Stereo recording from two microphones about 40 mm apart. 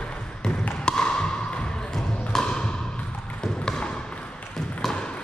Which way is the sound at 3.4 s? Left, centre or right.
Left.